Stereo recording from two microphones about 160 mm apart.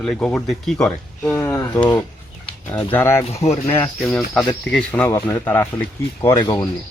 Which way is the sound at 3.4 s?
40° left (ahead or behind).